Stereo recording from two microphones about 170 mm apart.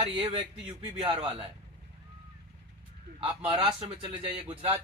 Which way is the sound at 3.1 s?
30° right (ahead or behind).